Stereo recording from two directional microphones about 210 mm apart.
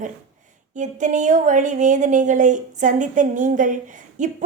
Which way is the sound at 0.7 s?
35° right (ahead or behind).